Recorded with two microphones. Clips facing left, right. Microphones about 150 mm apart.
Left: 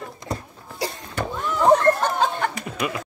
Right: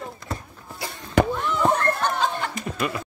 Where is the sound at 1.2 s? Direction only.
90° right.